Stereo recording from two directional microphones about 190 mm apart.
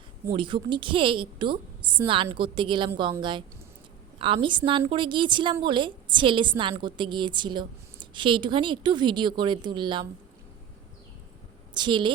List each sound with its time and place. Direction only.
0.3 s a woman's voice: 25° right (ahead or behind)
11.7 s speech: 25° right (ahead or behind)